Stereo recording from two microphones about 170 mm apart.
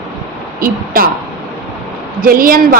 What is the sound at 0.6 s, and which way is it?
Speech, 55° right (ahead or behind).